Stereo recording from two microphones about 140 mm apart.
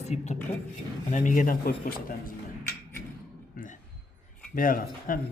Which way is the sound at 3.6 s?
90° left.